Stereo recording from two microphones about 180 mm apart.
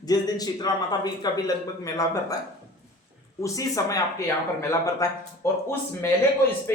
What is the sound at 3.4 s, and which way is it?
A man's voice, 20° left (ahead or behind).